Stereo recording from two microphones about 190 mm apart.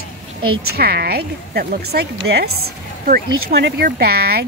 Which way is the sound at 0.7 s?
55° right (ahead or behind).